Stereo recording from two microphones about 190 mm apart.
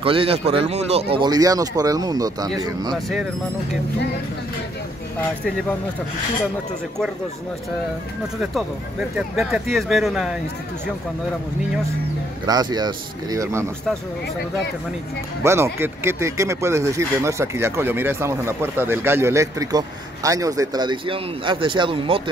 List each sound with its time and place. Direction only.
0.0 s speech: 30° right (ahead or behind)
9.4 s speech: centre (ahead or behind)
12.4 s speech: 20° right (ahead or behind)
15.4 s speech: 15° right (ahead or behind)